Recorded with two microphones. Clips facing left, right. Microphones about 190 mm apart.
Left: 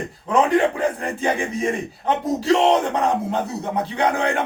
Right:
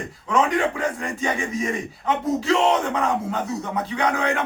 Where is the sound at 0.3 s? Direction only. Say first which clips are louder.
Left 3 dB; 35° left (ahead or behind).